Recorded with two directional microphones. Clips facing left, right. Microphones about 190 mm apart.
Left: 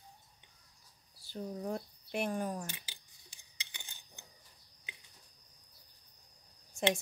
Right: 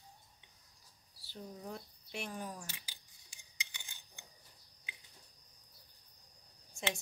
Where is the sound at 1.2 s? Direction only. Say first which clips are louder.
Left 8 dB; 50° left (ahead or behind).